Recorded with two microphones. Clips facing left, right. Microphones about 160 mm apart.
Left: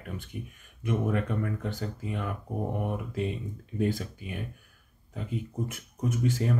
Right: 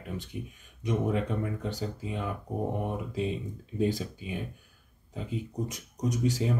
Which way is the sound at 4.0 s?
20° right (ahead or behind).